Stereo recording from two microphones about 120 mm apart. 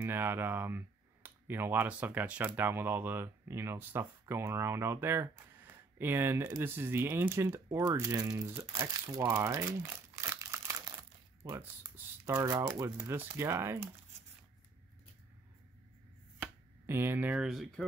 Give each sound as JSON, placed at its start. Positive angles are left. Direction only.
{"t": 0.0, "sound": "speech", "side_deg": -20}
{"t": 16.8, "sound": "speech", "side_deg": -20}
{"t": 17.3, "sound": "speech", "side_deg": 0}